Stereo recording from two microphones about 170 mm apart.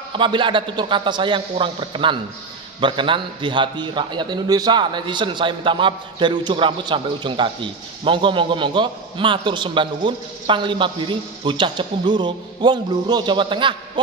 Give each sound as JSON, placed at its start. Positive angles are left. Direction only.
{"t": 0.1, "sound": "a man's voice", "side_deg": -30}